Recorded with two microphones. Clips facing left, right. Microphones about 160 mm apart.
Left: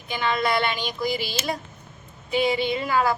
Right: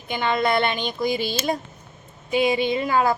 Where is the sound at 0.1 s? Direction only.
25° right (ahead or behind).